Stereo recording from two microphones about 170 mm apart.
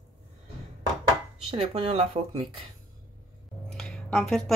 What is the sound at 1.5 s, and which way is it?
Speech, 35° right (ahead or behind).